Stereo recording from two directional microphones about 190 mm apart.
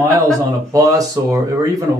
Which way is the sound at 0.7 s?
20° right (ahead or behind).